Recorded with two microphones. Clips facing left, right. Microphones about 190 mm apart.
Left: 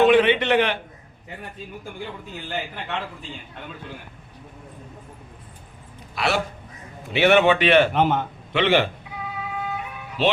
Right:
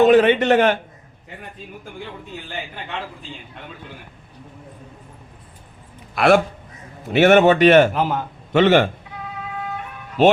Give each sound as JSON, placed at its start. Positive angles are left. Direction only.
{"t": 0.0, "sound": "a man's voice", "side_deg": -45}
{"t": 6.1, "sound": "a man's voice", "side_deg": -50}
{"t": 7.9, "sound": "a man's voice", "side_deg": 0}
{"t": 8.5, "sound": "a man's voice", "side_deg": -45}
{"t": 9.6, "sound": "music", "side_deg": 5}